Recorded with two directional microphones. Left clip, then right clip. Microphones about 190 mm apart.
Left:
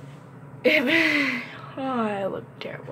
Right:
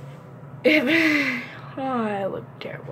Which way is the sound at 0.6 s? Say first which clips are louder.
Right 1 dB; centre (ahead or behind).